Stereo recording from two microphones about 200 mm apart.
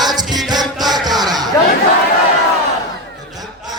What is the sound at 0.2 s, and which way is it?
Music, 20° right (ahead or behind).